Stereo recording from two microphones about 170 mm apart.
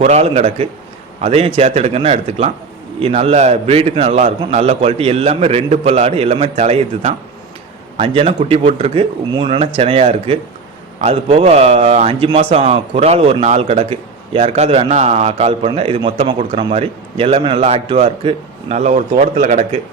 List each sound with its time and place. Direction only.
0.0 s a man's voice: 40° right (ahead or behind)